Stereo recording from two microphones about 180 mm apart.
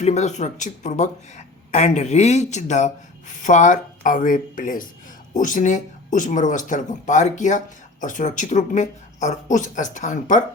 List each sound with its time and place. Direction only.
0.0 s speech: 40° left (ahead or behind)